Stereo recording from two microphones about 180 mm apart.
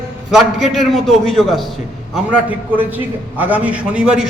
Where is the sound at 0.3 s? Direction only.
Centre (ahead or behind).